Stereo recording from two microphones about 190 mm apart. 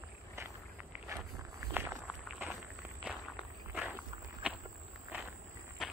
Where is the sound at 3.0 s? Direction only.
5° right (ahead or behind).